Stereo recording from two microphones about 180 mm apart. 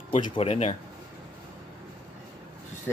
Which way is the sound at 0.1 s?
35° left (ahead or behind).